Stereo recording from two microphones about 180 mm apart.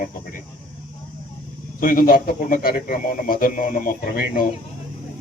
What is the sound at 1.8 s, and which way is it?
A man's voice, 55° left (ahead or behind).